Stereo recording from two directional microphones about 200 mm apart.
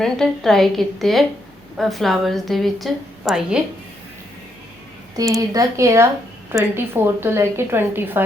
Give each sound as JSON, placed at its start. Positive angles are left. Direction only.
{"t": 0.0, "sound": "a woman's voice", "side_deg": 0}
{"t": 5.1, "sound": "a woman's voice", "side_deg": -15}